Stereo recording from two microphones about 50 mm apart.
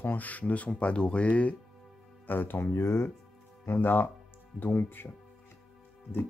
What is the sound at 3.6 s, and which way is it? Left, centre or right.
Speech, left.